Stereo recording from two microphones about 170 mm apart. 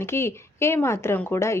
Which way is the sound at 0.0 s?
15° left (ahead or behind).